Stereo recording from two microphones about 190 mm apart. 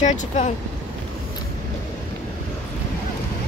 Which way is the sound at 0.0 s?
40° left (ahead or behind).